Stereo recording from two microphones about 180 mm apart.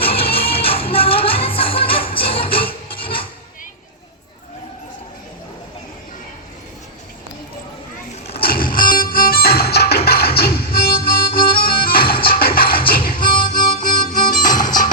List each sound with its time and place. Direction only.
0.0 s music: 30° left (ahead or behind)
8.4 s music: 55° left (ahead or behind)
13.1 s harmonica: 50° left (ahead or behind)
13.7 s music: 50° left (ahead or behind)